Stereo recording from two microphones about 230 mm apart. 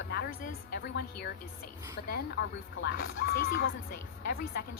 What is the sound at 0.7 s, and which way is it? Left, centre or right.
Speech, left.